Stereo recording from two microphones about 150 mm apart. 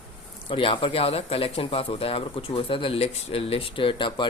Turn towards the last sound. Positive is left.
turn(degrees=35)  # may be behind; listen again after turning